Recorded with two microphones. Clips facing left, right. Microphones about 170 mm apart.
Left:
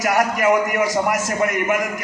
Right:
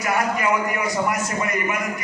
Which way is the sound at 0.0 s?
85° left.